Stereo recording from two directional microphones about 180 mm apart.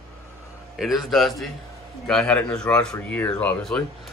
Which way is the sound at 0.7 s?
Centre (ahead or behind).